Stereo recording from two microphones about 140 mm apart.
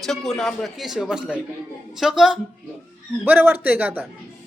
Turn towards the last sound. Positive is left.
turn(degrees=-15)  # may be behind; listen again after turning